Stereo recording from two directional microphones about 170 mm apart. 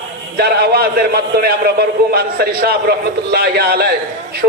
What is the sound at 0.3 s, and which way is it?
A man's voice, 65° right (ahead or behind).